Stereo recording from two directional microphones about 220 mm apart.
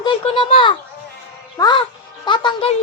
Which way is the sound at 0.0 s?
20° left (ahead or behind).